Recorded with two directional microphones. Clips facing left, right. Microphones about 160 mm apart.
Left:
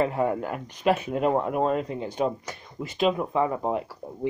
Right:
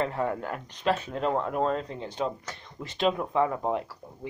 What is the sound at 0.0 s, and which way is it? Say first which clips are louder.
Speech: left 4 dB; 10° left (ahead or behind).